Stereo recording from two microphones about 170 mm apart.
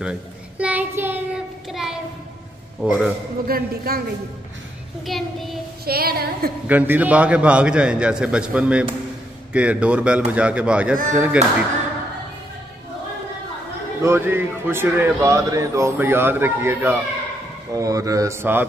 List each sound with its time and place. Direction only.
0.0 s child singing: 5° right (ahead or behind)
2.8 s speech: 5° right (ahead or behind)
3.4 s a woman's voice: 60° right (ahead or behind)
5.0 s child singing: centre (ahead or behind)
5.9 s a woman's voice: 65° right (ahead or behind)
6.7 s speech: 10° right (ahead or behind)
14.0 s speech: 15° right (ahead or behind)